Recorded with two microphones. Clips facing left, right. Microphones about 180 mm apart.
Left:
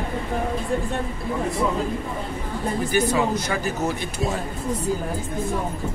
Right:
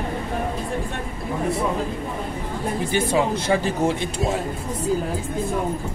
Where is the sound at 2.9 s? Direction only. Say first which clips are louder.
Even; 25° right (ahead or behind).